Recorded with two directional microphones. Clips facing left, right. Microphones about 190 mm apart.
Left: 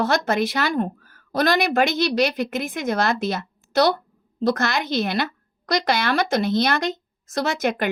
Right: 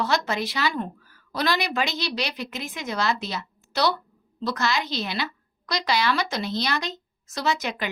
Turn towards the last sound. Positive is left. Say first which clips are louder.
# left 5 dB
turn(degrees=50)  # may be behind; listen again after turning